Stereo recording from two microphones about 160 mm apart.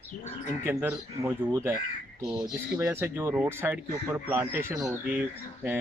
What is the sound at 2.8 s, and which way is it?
Speech, 15° right (ahead or behind).